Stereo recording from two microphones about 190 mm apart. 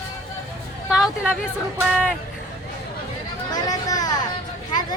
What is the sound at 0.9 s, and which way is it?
Speech, 5° right (ahead or behind).